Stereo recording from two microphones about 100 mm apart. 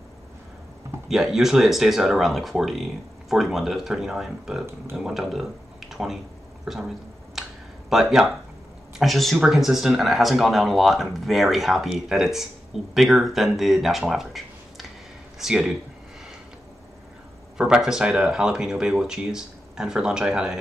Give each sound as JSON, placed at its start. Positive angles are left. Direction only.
{"t": 1.0, "sound": "speech", "side_deg": -5}
{"t": 7.4, "sound": "a sound", "side_deg": -5}
{"t": 7.9, "sound": "speech", "side_deg": -5}
{"t": 14.1, "sound": "a sound", "side_deg": 0}
{"t": 15.3, "sound": "speech", "side_deg": -5}
{"t": 17.6, "sound": "speech", "side_deg": -5}